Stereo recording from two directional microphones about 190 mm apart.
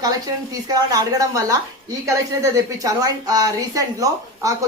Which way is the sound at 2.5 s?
20° right (ahead or behind).